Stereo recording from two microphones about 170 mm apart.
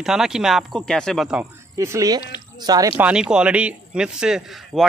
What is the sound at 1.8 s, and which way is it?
Speech, 20° right (ahead or behind).